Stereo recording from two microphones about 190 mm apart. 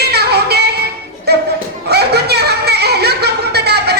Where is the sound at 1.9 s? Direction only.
60° right (ahead or behind).